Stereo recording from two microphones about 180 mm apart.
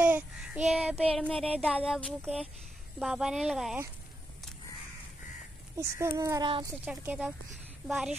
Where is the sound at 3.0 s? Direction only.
Centre (ahead or behind).